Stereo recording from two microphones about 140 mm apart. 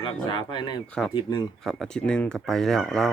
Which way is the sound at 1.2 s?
30° left (ahead or behind).